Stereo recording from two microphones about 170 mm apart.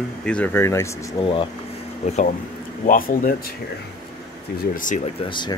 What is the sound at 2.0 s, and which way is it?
Speech, 40° left (ahead or behind).